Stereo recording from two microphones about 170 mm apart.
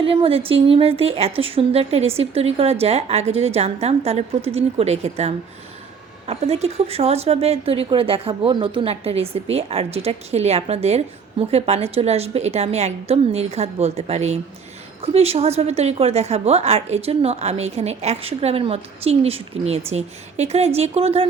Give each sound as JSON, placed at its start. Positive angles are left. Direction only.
{"t": 0.0, "sound": "speech", "side_deg": -30}